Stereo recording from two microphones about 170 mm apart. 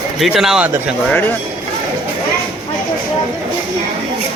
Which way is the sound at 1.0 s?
10° left (ahead or behind).